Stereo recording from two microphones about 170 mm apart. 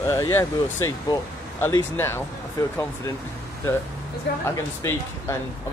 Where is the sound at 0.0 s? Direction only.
15° left (ahead or behind).